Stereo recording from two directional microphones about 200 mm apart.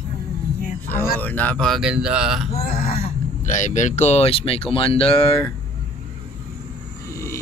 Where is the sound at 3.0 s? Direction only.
35° left (ahead or behind).